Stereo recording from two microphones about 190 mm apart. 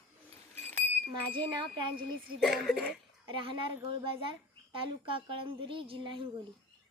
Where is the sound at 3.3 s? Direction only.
25° right (ahead or behind).